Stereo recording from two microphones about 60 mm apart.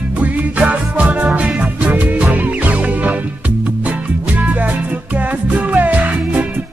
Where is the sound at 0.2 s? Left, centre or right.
Right.